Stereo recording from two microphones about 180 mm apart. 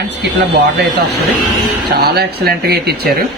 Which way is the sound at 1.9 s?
60° right (ahead or behind).